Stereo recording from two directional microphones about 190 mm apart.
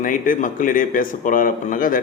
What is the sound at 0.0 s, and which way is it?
A man's voice, 45° left (ahead or behind).